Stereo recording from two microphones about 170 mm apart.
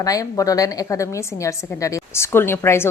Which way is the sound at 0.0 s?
20° left (ahead or behind).